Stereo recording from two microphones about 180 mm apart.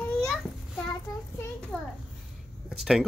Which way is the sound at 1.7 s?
5° left (ahead or behind).